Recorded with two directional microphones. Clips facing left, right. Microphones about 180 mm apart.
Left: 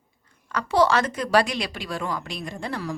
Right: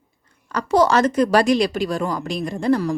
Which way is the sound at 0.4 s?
40° right (ahead or behind).